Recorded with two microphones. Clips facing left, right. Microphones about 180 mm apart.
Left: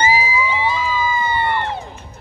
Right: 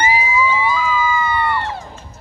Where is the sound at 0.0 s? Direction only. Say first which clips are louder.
Right 1 dB; 25° left (ahead or behind).